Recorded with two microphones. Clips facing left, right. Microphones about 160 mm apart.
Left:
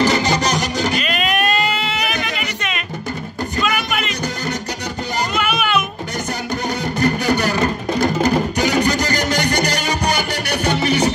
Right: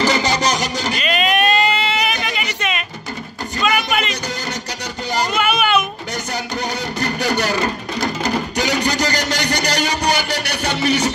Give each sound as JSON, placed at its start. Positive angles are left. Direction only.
{"t": 0.0, "sound": "music", "side_deg": 55}
{"t": 1.0, "sound": "a sound", "side_deg": 0}
{"t": 2.1, "sound": "music", "side_deg": 55}
{"t": 3.6, "sound": "music", "side_deg": 0}
{"t": 5.3, "sound": "children playing", "side_deg": 0}
{"t": 6.5, "sound": "music", "side_deg": 50}